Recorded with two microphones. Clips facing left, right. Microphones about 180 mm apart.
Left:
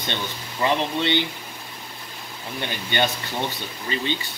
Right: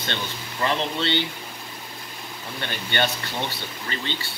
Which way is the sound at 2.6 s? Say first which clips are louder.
Left 2 dB; 15° left (ahead or behind).